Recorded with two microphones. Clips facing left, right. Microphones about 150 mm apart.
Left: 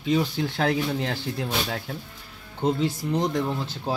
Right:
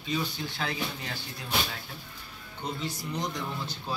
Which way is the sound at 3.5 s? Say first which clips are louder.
Left 7 dB; 90° left.